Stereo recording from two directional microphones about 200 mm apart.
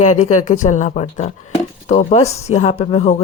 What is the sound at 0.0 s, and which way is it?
Speech, 35° left (ahead or behind).